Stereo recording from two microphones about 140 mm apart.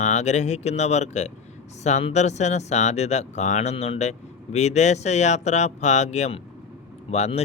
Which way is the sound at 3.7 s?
45° left (ahead or behind).